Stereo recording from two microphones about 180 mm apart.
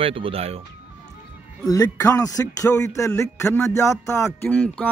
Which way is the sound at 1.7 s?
20° left (ahead or behind).